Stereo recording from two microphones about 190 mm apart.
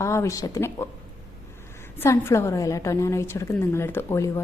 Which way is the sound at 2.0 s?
15° left (ahead or behind).